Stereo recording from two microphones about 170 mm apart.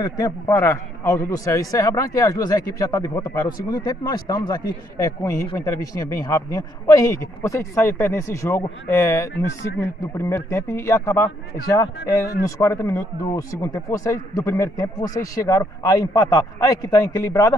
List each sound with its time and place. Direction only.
0.0 s a man's voice: 20° left (ahead or behind)